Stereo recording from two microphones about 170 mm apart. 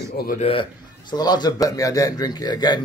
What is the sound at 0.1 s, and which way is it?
Speech, 65° left (ahead or behind).